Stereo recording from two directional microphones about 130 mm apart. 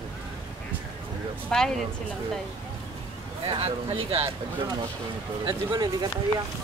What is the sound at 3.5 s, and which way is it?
Speech, 45° right (ahead or behind).